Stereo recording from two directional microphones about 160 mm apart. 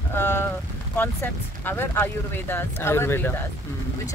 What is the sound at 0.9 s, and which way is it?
Speech, 10° left (ahead or behind).